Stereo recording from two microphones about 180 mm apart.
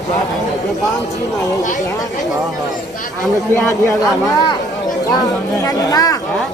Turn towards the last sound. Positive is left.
turn(degrees=20)  # may be behind; listen again after turning